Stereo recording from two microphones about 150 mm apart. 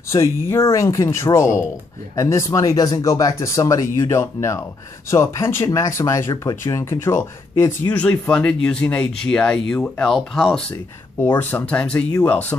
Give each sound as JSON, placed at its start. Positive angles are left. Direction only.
{"t": 0.1, "sound": "speech", "side_deg": 20}